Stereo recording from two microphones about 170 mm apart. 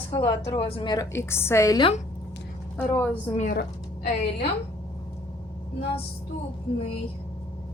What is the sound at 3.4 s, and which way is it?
Speech, 55° left (ahead or behind).